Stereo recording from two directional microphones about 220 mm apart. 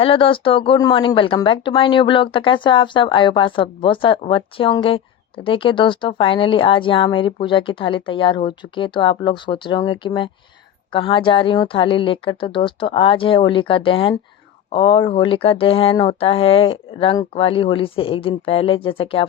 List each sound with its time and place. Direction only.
0.0 s speech: 25° left (ahead or behind)